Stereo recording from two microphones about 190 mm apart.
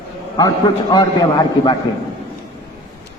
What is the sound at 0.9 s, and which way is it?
Speech, 20° left (ahead or behind).